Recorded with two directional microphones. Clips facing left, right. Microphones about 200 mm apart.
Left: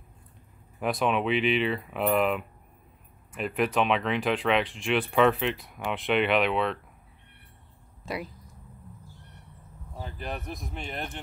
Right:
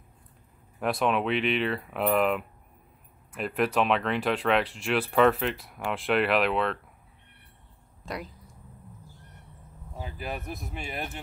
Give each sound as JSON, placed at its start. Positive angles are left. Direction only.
{"t": 0.7, "sound": "speech", "side_deg": 0}
{"t": 8.0, "sound": "speech", "side_deg": 5}
{"t": 9.9, "sound": "speech", "side_deg": -5}